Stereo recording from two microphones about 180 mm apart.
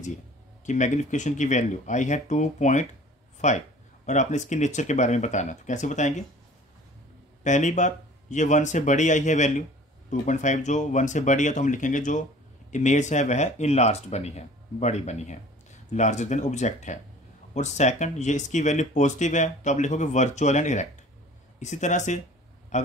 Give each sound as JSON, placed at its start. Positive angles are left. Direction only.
{"t": 0.7, "sound": "speech", "side_deg": 40}
{"t": 7.4, "sound": "speech", "side_deg": 40}